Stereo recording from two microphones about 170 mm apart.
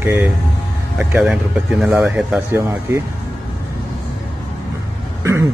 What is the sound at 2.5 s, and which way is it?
Speech, 15° right (ahead or behind).